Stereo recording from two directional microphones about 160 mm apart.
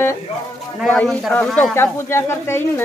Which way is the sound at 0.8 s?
5° left (ahead or behind).